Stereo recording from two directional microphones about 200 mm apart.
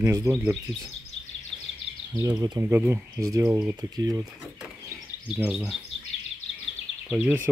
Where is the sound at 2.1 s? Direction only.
20° right (ahead or behind).